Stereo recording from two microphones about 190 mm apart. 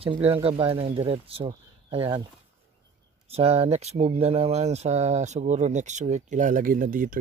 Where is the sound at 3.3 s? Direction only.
30° right (ahead or behind).